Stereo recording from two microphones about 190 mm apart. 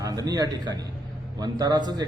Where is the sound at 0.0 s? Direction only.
20° right (ahead or behind).